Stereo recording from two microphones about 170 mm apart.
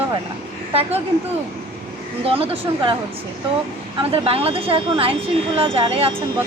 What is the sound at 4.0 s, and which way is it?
Speech, 35° right (ahead or behind).